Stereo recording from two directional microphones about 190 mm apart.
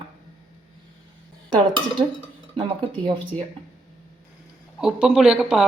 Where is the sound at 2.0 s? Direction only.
15° right (ahead or behind).